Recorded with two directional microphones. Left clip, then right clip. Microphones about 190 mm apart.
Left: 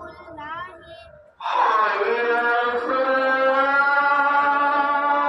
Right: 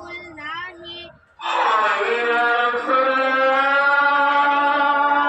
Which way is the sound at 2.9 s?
70° left (ahead or behind).